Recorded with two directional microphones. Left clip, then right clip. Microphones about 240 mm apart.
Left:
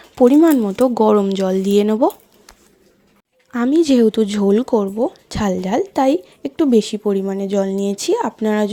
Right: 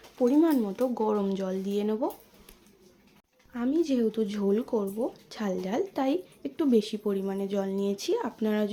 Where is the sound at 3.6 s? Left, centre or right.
Left.